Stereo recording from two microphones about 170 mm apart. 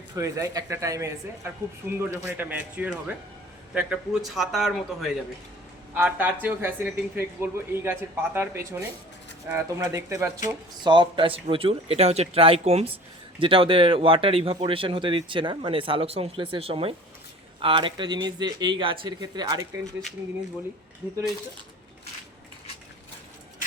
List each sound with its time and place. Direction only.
0.1 s speech: 20° right (ahead or behind)
10.8 s speech: 25° right (ahead or behind)